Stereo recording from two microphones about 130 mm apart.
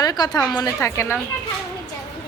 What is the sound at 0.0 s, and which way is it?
Speech, 30° left (ahead or behind).